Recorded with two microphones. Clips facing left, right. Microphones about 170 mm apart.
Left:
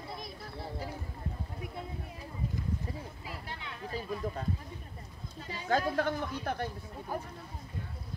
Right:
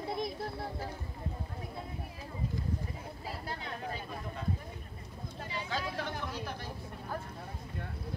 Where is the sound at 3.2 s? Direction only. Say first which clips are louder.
Right 3 dB; 40° right (ahead or behind).